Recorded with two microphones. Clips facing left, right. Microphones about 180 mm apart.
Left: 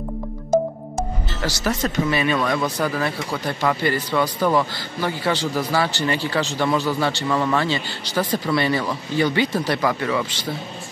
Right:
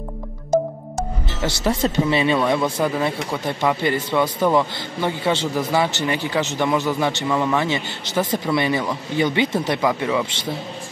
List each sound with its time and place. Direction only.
1.9 s speech: 25° right (ahead or behind)
7.3 s speech: 10° right (ahead or behind)
7.6 s speech: 20° right (ahead or behind)